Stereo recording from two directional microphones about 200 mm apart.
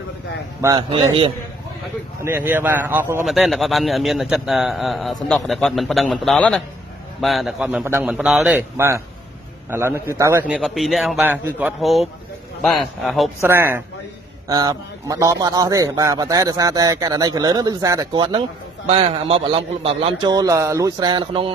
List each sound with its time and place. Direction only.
0.6 s a man's voice: 20° right (ahead or behind)
2.2 s a man's voice: 10° right (ahead or behind)
13.4 s a man's voice: 10° right (ahead or behind)